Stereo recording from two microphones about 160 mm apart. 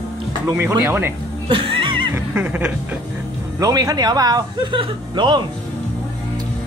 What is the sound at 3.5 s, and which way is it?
Speech, 20° right (ahead or behind).